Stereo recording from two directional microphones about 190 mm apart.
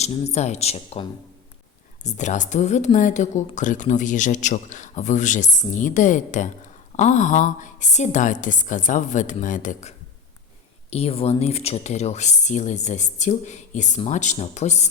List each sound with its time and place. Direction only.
0.0 s speech: 35° left (ahead or behind)
2.0 s speech: 40° left (ahead or behind)
10.9 s speech: 30° left (ahead or behind)